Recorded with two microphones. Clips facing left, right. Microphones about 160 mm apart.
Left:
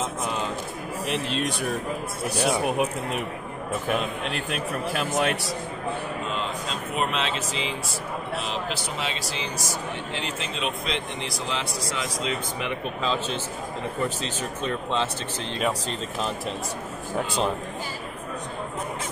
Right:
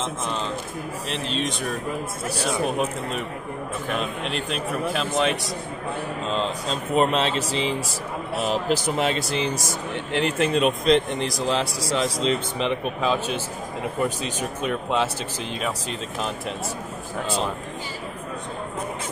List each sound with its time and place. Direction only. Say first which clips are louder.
1.0 s speech: left 1 dB; 5° left (ahead or behind)
4.2 s speech: right 2 dB; centre (ahead or behind)
6.3 s a man's voice: right 4 dB; 35° right (ahead or behind); by 16.3 s centre (ahead or behind)